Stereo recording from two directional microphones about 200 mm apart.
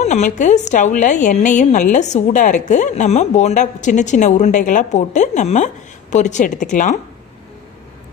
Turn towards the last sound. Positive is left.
turn(degrees=40)  # may be behind; listen again after turning